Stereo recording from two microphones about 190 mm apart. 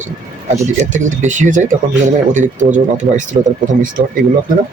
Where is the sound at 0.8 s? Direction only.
40° right (ahead or behind).